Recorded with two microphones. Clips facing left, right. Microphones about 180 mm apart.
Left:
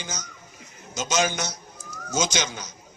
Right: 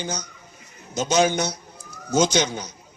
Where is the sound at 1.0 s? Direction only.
35° right (ahead or behind).